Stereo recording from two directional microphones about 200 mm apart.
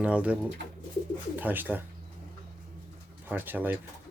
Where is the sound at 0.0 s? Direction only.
5° right (ahead or behind).